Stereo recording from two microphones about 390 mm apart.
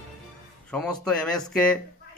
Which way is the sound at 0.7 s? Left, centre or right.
Centre.